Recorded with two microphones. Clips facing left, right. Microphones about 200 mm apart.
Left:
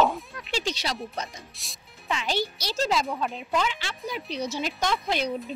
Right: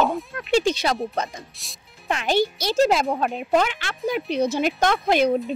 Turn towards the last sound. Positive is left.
turn(degrees=-55)  # may be behind; listen again after turning